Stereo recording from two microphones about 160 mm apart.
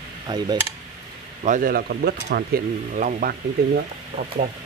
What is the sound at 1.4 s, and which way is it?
Speech, 55° right (ahead or behind).